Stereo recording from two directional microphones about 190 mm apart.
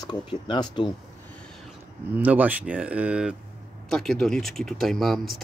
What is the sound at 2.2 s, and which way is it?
Speech, 10° right (ahead or behind).